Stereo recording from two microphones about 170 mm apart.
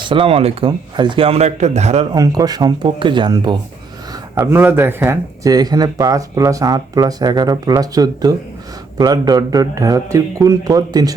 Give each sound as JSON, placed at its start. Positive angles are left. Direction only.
{"t": 0.0, "sound": "speech", "side_deg": -30}
{"t": 2.1, "sound": "speech", "side_deg": -20}
{"t": 4.4, "sound": "speech", "side_deg": -10}